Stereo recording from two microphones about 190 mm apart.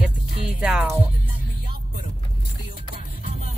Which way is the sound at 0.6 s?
5° right (ahead or behind).